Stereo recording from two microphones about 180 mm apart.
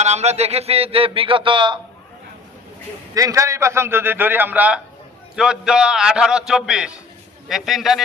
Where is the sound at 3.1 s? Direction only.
20° right (ahead or behind).